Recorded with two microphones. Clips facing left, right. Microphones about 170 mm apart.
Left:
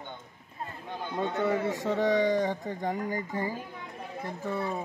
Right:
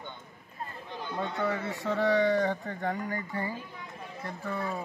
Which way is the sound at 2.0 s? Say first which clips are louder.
Right 1 dB; 15° left (ahead or behind).